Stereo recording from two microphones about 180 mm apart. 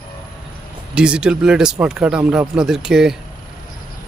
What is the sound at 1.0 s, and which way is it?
Speech, 5° right (ahead or behind).